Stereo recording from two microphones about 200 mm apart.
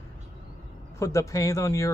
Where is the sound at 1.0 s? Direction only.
15° left (ahead or behind).